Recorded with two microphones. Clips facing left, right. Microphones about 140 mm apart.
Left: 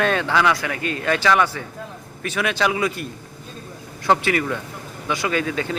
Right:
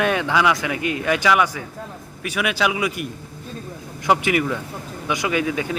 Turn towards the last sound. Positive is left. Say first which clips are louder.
# right 1 dB
turn(degrees=-10)  # may be behind; listen again after turning